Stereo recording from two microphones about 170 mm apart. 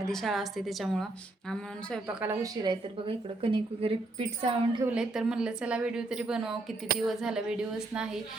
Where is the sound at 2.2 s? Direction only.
20° right (ahead or behind).